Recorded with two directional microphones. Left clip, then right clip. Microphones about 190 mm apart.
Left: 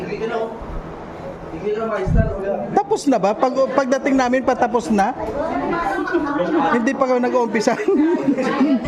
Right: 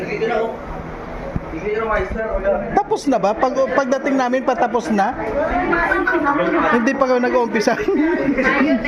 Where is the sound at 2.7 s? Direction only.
25° left (ahead or behind).